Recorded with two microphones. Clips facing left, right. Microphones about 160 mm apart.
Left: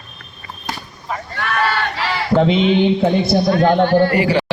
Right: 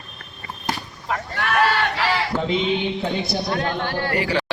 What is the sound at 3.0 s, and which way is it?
Speech, 55° left (ahead or behind).